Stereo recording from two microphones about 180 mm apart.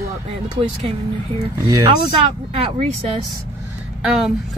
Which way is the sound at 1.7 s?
20° right (ahead or behind).